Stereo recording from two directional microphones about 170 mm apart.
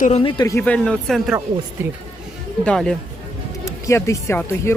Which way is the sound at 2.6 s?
5° left (ahead or behind).